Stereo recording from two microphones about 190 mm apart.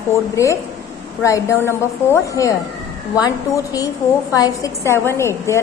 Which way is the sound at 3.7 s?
20° left (ahead or behind).